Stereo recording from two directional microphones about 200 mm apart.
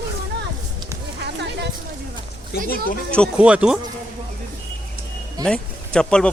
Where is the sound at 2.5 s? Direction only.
50° left (ahead or behind).